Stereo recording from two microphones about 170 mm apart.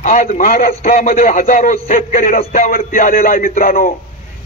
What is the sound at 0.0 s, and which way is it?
A man's voice, 50° left (ahead or behind).